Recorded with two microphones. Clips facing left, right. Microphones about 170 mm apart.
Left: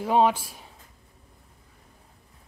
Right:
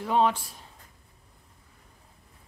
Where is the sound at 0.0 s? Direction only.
15° left (ahead or behind).